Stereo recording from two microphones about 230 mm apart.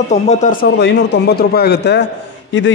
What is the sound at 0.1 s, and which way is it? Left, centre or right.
A man's voice, left.